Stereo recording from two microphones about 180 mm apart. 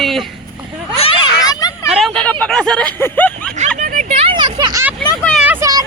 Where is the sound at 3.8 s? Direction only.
45° right (ahead or behind); by 4.9 s 15° right (ahead or behind).